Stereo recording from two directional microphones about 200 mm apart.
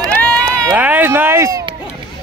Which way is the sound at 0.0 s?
20° right (ahead or behind).